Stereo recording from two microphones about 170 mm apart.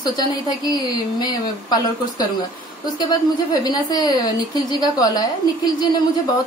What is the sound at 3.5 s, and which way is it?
A woman's voice, 25° left (ahead or behind).